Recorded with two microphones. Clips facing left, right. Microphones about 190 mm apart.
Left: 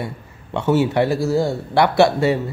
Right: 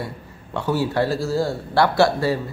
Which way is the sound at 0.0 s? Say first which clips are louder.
Left 2 dB; 25° left (ahead or behind).